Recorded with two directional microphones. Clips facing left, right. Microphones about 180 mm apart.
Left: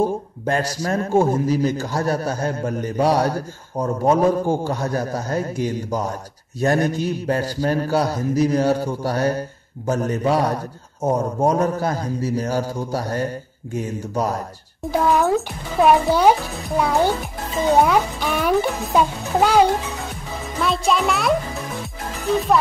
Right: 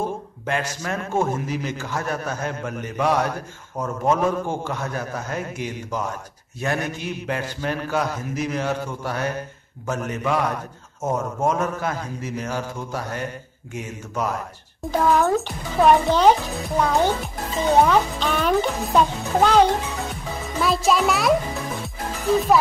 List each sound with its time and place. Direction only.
0.0 s a man's voice: 35° left (ahead or behind)
14.9 s a child's voice: 5° left (ahead or behind)
20.6 s a child's voice: centre (ahead or behind)